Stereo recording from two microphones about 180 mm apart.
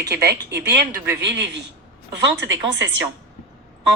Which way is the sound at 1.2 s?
75° right (ahead or behind).